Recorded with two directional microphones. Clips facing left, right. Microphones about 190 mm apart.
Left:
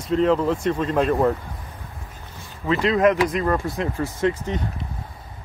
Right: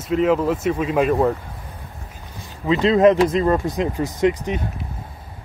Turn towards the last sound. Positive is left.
turn(degrees=-15)  # may be behind; listen again after turning